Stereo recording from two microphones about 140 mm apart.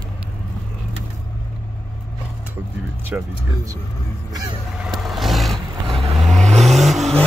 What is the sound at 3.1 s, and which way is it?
Speech, 15° right (ahead or behind).